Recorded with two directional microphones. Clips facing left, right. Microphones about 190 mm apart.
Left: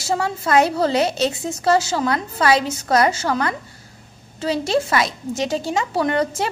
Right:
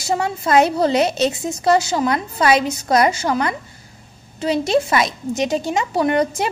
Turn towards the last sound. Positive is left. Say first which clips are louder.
# right 2 dB
turn(degrees=-15)  # may be behind; listen again after turning